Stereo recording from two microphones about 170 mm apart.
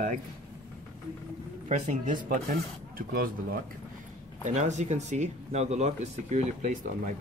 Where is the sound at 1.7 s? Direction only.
45° right (ahead or behind).